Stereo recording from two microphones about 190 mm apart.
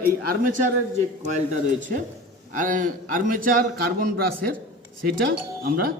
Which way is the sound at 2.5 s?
45° right (ahead or behind).